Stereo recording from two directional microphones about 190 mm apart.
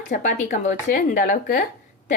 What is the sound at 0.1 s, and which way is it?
Speech, 40° left (ahead or behind).